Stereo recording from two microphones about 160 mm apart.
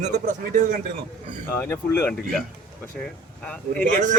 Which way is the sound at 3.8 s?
55° right (ahead or behind).